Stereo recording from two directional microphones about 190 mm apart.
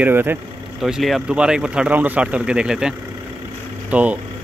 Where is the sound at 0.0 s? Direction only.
10° right (ahead or behind).